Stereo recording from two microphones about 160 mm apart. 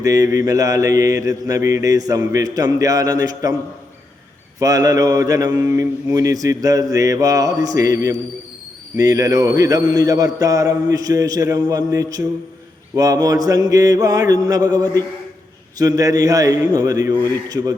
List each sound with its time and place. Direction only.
0.0 s mantra: 20° right (ahead or behind)
4.6 s mantra: 20° right (ahead or behind)